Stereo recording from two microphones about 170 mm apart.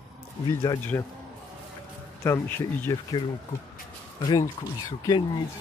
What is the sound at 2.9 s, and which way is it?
Speech, 25° left (ahead or behind).